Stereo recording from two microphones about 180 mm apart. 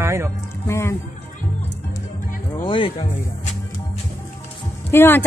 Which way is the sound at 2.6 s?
30° left (ahead or behind).